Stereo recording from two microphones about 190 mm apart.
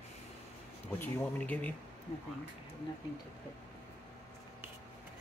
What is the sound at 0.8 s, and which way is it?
Speech, 10° left (ahead or behind).